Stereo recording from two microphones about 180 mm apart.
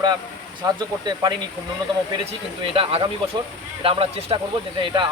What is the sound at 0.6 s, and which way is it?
Speech, 20° right (ahead or behind).